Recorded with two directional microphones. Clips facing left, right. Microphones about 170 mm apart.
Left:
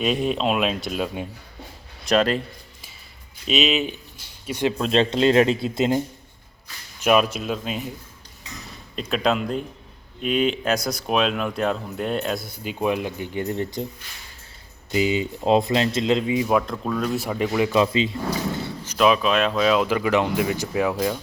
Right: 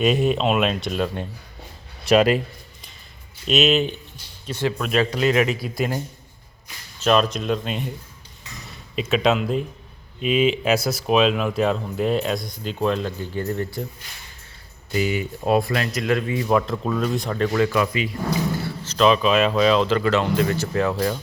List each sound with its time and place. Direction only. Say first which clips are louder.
0.0 s speech: right 3 dB; centre (ahead or behind)
2.0 s a man's voice: right 3 dB; 10° right (ahead or behind)
3.4 s speech: right 3 dB; centre (ahead or behind)
4.4 s speech: left 1 dB; 15° left (ahead or behind)
4.8 s speech: left 2 dB; 25° left (ahead or behind)
7.0 s speech: even; 10° left (ahead or behind)
9.0 s speech: right 3 dB; centre (ahead or behind); by 13.8 s 20° left (ahead or behind)
14.9 s speech: left 2 dB; 20° left (ahead or behind)
18.6 s speech: even; 10° left (ahead or behind)